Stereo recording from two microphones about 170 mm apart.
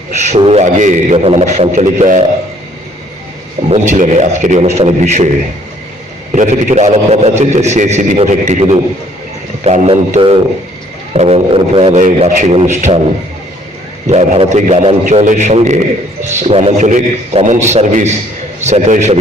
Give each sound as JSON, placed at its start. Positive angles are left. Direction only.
{"t": 0.1, "sound": "a man's voice", "side_deg": -40}
{"t": 3.7, "sound": "a man's voice", "side_deg": -45}
{"t": 6.3, "sound": "a man's voice", "side_deg": -45}
{"t": 14.1, "sound": "a man's voice", "side_deg": -40}